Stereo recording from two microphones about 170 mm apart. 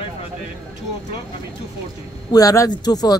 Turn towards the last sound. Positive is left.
turn(degrees=25)  # may be behind; listen again after turning